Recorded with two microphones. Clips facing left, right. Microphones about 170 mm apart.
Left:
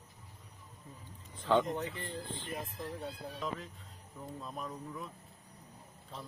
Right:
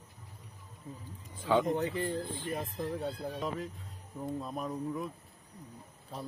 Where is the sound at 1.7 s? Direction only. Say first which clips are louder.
Right 6 dB; 35° right (ahead or behind).